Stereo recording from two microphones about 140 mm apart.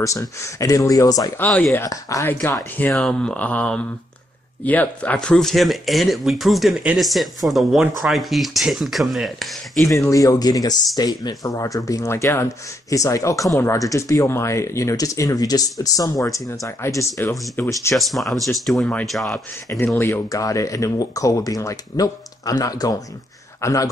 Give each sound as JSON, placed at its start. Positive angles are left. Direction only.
{"t": 0.0, "sound": "speech", "side_deg": 20}
{"t": 1.4, "sound": "speech", "side_deg": 10}
{"t": 1.8, "sound": "speech", "side_deg": 25}
{"t": 9.8, "sound": "speech", "side_deg": 20}
{"t": 17.9, "sound": "speech", "side_deg": 0}
{"t": 19.7, "sound": "speech", "side_deg": 20}